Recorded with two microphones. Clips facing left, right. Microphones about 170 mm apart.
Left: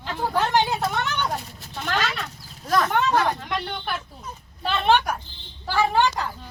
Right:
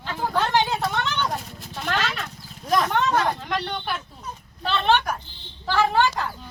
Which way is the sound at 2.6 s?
20° right (ahead or behind).